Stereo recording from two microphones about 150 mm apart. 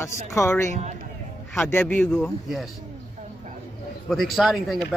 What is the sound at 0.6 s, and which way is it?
Speech, 50° right (ahead or behind).